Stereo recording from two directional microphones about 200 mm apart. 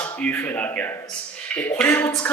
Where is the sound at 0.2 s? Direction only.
10° left (ahead or behind).